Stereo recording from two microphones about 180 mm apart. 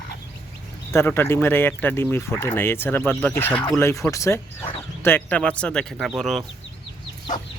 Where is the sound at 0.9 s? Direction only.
15° left (ahead or behind).